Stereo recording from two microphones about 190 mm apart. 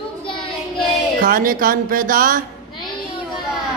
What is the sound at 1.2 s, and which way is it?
Speech, 50° right (ahead or behind).